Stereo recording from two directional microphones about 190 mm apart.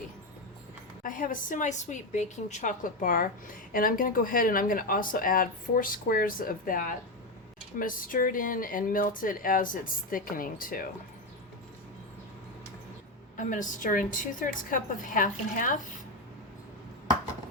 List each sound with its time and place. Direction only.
1.0 s a woman's voice: 45° left (ahead or behind)
13.3 s a woman's voice: 40° left (ahead or behind)